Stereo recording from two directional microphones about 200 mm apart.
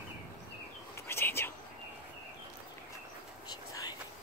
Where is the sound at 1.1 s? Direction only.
10° left (ahead or behind).